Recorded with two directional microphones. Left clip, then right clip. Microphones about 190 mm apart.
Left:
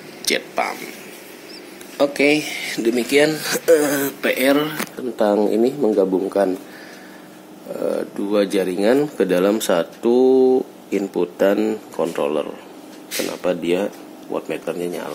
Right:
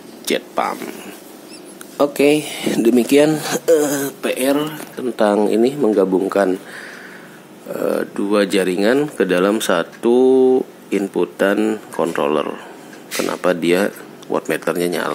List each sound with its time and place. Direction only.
0.3 s speech: 20° right (ahead or behind)
2.0 s speech: 20° right (ahead or behind)
3.4 s speech: 20° right (ahead or behind)
7.7 s speech: 10° right (ahead or behind)